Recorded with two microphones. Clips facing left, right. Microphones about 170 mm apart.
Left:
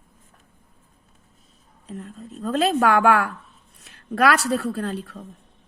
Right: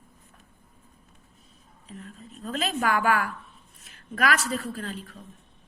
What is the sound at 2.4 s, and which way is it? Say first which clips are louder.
A woman's voice: left 8 dB; 70° left (ahead or behind).